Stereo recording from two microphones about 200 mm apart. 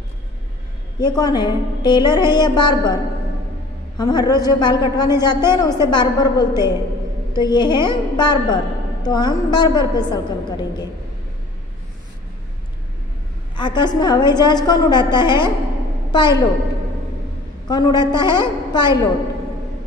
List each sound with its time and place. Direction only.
0.9 s a woman's voice: 20° left (ahead or behind)
4.0 s a woman's voice: 20° left (ahead or behind)
13.6 s a woman's voice: 25° left (ahead or behind)
17.6 s a woman's voice: 20° left (ahead or behind)